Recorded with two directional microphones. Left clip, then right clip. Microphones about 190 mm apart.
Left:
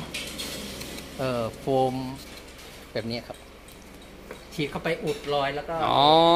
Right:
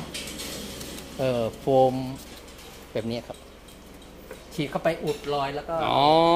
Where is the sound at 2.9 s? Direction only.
20° right (ahead or behind).